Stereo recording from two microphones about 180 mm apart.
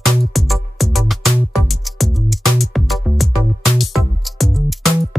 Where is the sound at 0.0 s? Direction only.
Centre (ahead or behind).